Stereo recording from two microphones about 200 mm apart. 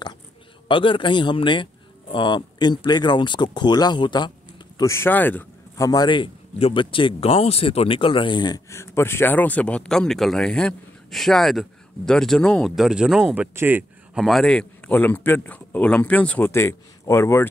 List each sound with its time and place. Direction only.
0.7 s speech: 25° left (ahead or behind); by 5.9 s 10° left (ahead or behind)
5.9 s speech: 20° left (ahead or behind)